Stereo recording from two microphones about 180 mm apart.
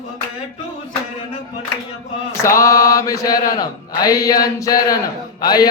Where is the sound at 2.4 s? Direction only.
15° left (ahead or behind).